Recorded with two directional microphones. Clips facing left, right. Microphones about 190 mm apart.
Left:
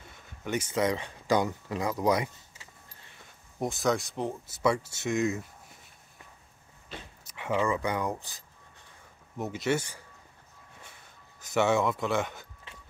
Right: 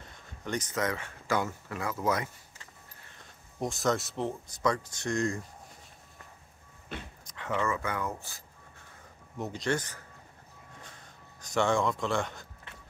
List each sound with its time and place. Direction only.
0.4 s speech: 5° left (ahead or behind)
3.5 s speech: centre (ahead or behind)
7.2 s speech: 10° left (ahead or behind)
9.4 s speech: 5° left (ahead or behind)
11.4 s speech: 5° left (ahead or behind)